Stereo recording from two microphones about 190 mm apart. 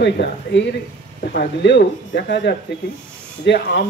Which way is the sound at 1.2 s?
55° left (ahead or behind).